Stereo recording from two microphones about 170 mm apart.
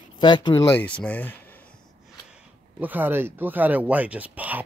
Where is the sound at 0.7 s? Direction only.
10° left (ahead or behind).